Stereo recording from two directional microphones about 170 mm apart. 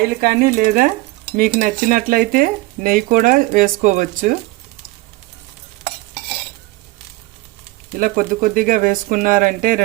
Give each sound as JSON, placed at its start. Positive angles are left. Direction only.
{"t": 0.2, "sound": "speech", "side_deg": -60}
{"t": 1.3, "sound": "cutlery", "side_deg": -55}
{"t": 7.9, "sound": "cutlery", "side_deg": -55}